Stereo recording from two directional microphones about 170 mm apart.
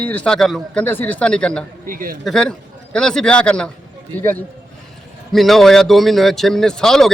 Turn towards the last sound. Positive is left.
turn(degrees=0)  # may be behind; listen again after turning